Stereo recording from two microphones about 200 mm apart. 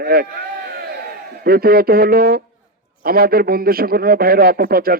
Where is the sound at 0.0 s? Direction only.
50° right (ahead or behind).